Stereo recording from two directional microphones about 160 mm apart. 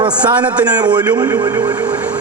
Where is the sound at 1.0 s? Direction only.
15° right (ahead or behind).